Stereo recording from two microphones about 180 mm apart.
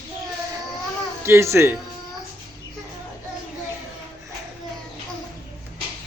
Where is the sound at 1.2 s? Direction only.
15° right (ahead or behind).